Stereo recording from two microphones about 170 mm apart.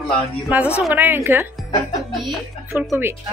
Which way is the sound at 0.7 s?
10° right (ahead or behind).